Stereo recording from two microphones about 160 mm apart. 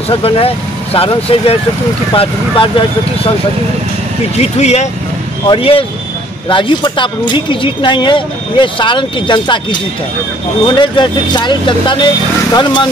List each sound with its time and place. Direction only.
0.1 s speech: 35° left (ahead or behind)
4.4 s speech: 40° left (ahead or behind)